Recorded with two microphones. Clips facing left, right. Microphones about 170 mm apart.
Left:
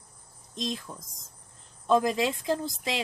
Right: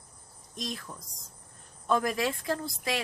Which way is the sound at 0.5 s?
20° left (ahead or behind).